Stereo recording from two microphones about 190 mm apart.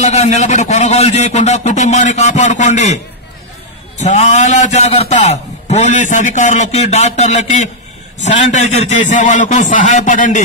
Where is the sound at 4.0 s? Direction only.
40° left (ahead or behind).